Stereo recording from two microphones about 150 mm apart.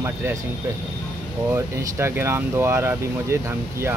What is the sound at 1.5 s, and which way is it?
Speech, 15° right (ahead or behind).